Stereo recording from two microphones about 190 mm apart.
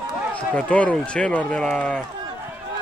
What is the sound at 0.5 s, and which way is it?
Speech, 5° left (ahead or behind).